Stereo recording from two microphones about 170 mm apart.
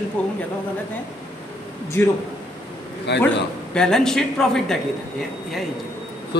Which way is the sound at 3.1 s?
85° left.